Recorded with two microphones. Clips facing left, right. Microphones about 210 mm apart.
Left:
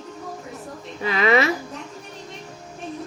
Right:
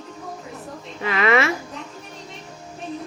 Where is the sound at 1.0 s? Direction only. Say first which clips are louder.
Left 1 dB; 35° left (ahead or behind).